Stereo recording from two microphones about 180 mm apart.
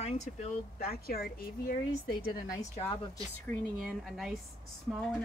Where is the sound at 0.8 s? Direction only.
55° left (ahead or behind).